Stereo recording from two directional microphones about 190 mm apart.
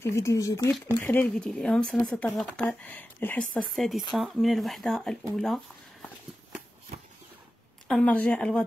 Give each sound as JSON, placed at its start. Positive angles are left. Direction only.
{"t": 0.0, "sound": "speech", "side_deg": 15}
{"t": 7.9, "sound": "speech", "side_deg": 5}